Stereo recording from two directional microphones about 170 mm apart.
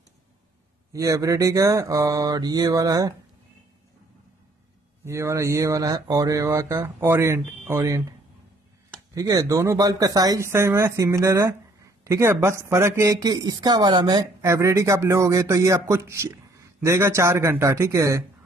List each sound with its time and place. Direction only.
0.9 s speech: 20° right (ahead or behind)
5.0 s speech: 15° right (ahead or behind)
9.1 s speech: 20° right (ahead or behind)